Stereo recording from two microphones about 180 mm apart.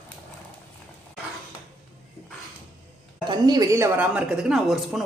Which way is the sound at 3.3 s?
20° right (ahead or behind).